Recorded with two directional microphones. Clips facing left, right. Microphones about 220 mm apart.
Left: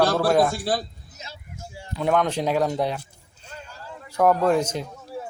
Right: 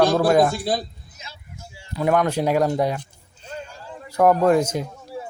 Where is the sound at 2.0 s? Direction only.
5° right (ahead or behind).